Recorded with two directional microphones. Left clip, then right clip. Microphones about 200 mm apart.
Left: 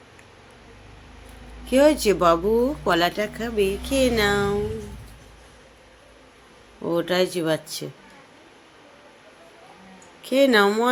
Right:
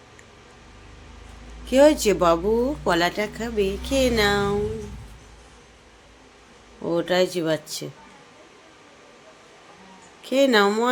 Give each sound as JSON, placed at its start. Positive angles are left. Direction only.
{"t": 1.6, "sound": "speech", "side_deg": 0}
{"t": 6.8, "sound": "speech", "side_deg": 0}
{"t": 10.2, "sound": "speech", "side_deg": 0}